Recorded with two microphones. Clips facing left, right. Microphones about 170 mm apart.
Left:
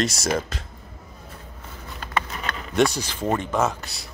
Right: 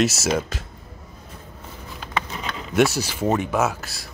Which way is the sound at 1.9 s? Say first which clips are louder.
Left 1 dB; 5° right (ahead or behind).